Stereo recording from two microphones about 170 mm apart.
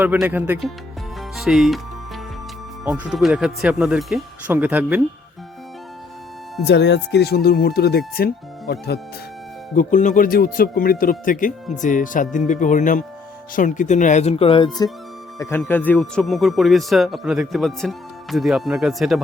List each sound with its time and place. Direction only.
0.0 s speech: 10° right (ahead or behind)
1.4 s music: centre (ahead or behind)
2.8 s a man's voice: 5° right (ahead or behind)
6.7 s speech: 90° left; by 9.0 s 70° left (ahead or behind)
9.7 s speech: 50° left (ahead or behind); by 14.8 s 30° left (ahead or behind)
15.4 s a man's voice: 15° left (ahead or behind)